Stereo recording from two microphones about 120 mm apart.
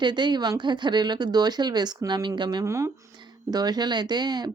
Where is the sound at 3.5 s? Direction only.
35° right (ahead or behind).